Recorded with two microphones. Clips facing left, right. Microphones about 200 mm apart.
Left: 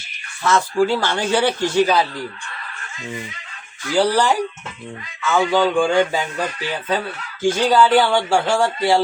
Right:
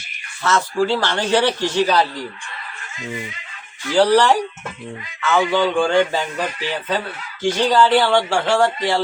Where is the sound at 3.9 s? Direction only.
10° left (ahead or behind).